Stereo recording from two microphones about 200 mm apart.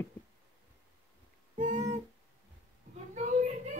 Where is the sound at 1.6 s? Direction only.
40° right (ahead or behind).